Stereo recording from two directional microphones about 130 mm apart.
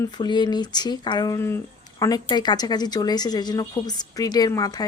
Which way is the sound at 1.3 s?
20° left (ahead or behind).